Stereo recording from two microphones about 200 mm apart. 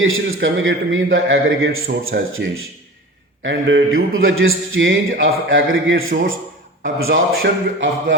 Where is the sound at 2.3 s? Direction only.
85° right.